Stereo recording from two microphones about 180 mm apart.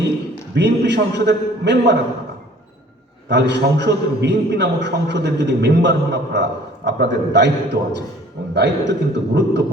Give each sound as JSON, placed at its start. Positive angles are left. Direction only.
{"t": 0.5, "sound": "a man's voice", "side_deg": -75}
{"t": 3.2, "sound": "a man's voice", "side_deg": -75}